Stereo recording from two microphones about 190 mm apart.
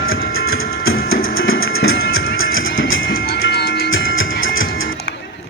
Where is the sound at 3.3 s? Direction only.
55° left (ahead or behind); by 5.0 s 90° left.